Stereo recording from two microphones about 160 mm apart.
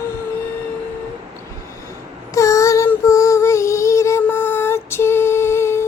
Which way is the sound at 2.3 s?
20° left (ahead or behind).